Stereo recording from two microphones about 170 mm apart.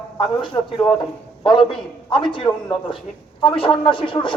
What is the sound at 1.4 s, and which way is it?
A man's voice, 30° left (ahead or behind).